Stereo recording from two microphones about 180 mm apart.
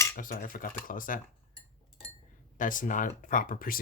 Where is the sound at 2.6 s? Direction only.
45° left (ahead or behind).